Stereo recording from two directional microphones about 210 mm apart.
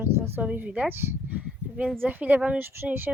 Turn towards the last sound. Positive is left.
turn(degrees=-10)  # may be behind; listen again after turning